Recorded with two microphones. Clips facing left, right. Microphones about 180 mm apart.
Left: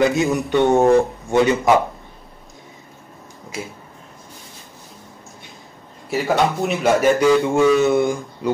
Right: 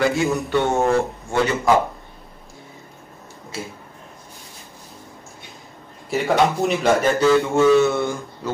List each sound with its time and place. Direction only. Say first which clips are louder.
0.0 s speech: left 2 dB; 20° left (ahead or behind)
6.0 s speech: even; centre (ahead or behind)